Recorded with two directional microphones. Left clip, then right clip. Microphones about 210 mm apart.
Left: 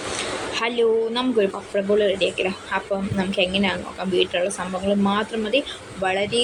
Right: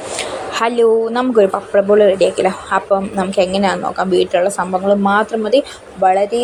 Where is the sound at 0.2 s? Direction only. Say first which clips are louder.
Right 8 dB; 25° right (ahead or behind).